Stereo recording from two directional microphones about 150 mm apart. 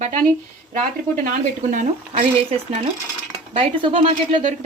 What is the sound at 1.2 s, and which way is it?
Speech, 60° right (ahead or behind).